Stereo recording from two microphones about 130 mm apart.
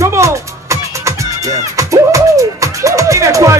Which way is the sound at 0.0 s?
20° right (ahead or behind).